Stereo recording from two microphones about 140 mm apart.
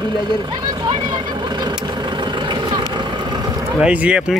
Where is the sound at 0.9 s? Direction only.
35° right (ahead or behind).